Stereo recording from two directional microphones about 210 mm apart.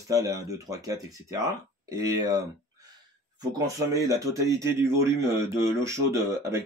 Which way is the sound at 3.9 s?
15° right (ahead or behind).